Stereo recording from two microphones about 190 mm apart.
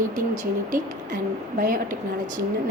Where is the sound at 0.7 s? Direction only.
45° right (ahead or behind).